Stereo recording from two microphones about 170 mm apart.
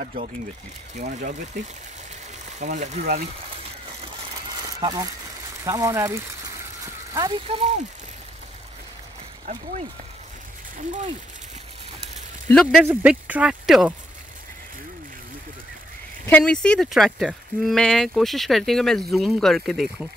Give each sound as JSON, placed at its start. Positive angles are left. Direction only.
{"t": 0.0, "sound": "speech", "side_deg": -50}
{"t": 2.6, "sound": "speech", "side_deg": -45}
{"t": 4.7, "sound": "speech", "side_deg": -20}
{"t": 7.2, "sound": "speech", "side_deg": -25}
{"t": 9.5, "sound": "speech", "side_deg": -50}
{"t": 12.4, "sound": "speech", "side_deg": 5}
{"t": 12.8, "sound": "speech", "side_deg": -10}
{"t": 16.3, "sound": "speech", "side_deg": 10}